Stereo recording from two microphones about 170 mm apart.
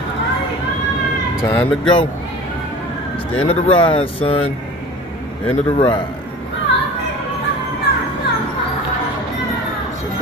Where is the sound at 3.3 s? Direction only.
35° left (ahead or behind).